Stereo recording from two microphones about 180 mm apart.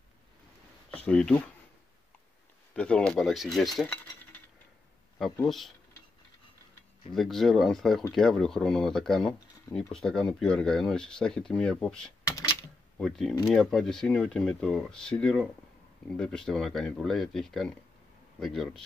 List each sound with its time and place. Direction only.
0.9 s speech: 5° left (ahead or behind)
2.7 s speech: 5° left (ahead or behind)
7.2 s speech: centre (ahead or behind)
12.3 s a sound: 20° left (ahead or behind)
12.9 s speech: centre (ahead or behind)